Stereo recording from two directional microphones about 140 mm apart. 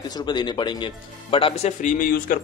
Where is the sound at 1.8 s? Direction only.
85° left.